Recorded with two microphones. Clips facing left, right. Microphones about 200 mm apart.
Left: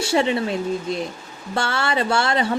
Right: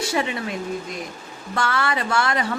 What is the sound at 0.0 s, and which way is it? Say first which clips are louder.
A woman's voice: left 5 dB; 30° left (ahead or behind).